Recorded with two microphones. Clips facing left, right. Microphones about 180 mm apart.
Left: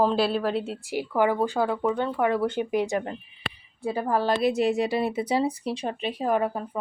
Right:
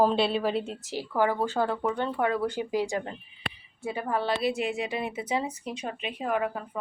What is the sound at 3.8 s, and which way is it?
A woman's voice, 35° left (ahead or behind).